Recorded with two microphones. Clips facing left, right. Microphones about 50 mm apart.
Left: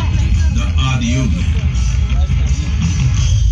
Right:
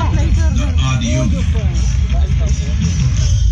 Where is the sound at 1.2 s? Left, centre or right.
Centre.